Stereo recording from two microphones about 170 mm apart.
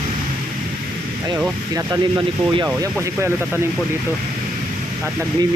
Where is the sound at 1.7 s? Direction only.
25° right (ahead or behind).